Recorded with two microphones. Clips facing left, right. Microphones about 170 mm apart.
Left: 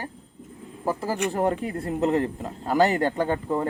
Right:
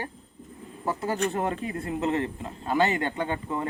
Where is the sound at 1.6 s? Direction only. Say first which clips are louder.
Left 3 dB; 35° left (ahead or behind).